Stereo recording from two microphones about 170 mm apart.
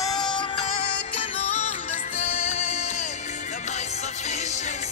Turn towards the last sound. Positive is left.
turn(degrees=40)  # may be behind; listen again after turning